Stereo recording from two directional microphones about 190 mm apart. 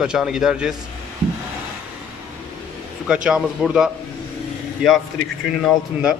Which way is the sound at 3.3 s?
5° right (ahead or behind).